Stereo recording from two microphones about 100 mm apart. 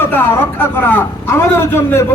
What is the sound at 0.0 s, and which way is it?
A man's voice, 20° left (ahead or behind).